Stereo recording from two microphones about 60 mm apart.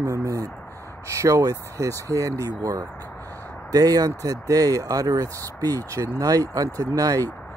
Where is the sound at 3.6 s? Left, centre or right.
Right.